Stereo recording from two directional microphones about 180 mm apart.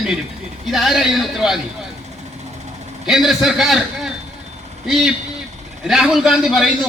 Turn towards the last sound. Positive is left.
turn(degrees=0)  # may be behind; listen again after turning